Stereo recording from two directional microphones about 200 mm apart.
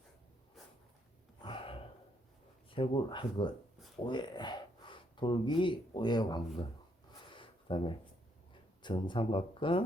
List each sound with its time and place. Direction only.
1.4 s gasp: 25° left (ahead or behind)
2.6 s speech: 25° left (ahead or behind)
7.1 s a sound: 25° left (ahead or behind)
8.8 s speech: 25° left (ahead or behind)